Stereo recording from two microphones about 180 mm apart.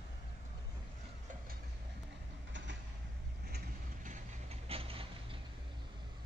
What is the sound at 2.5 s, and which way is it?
Train, 90° right.